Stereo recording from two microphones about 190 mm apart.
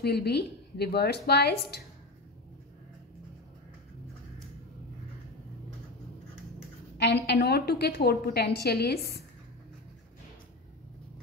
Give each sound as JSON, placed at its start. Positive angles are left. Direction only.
{"t": 0.0, "sound": "a woman's voice", "side_deg": 60}
{"t": 7.0, "sound": "a woman's voice", "side_deg": 65}